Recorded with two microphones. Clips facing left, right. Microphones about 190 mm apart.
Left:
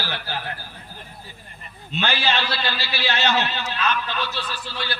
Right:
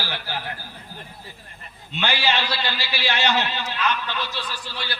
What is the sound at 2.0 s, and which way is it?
A man's voice, 15° right (ahead or behind).